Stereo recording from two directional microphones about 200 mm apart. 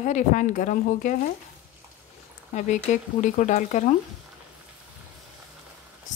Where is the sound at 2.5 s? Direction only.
35° left (ahead or behind).